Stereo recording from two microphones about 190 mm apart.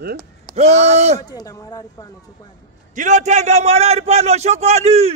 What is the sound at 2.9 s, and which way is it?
A man's voice, 40° right (ahead or behind).